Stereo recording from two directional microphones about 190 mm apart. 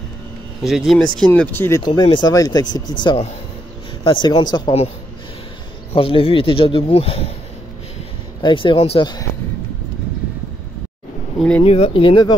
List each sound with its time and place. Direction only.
0.6 s speech: centre (ahead or behind)
1.9 s speech: 25° left (ahead or behind)
5.9 s speech: 30° left (ahead or behind)
8.4 s speech: 25° left (ahead or behind)
11.3 s speech: 5° left (ahead or behind)
11.6 s speech: 30° left (ahead or behind)